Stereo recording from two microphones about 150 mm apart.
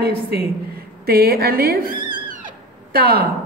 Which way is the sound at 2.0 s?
30° right (ahead or behind).